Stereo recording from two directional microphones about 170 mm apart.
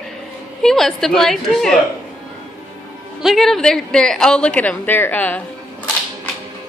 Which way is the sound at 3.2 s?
Centre (ahead or behind).